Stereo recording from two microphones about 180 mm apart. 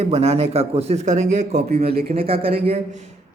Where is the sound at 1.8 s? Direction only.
60° right (ahead or behind).